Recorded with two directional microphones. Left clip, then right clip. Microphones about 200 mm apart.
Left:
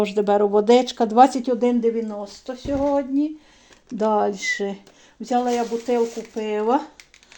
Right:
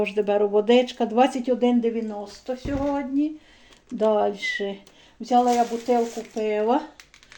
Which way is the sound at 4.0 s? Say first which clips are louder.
Left 1 dB; 30° left (ahead or behind).